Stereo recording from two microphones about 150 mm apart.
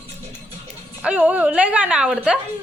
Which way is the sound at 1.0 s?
10° right (ahead or behind).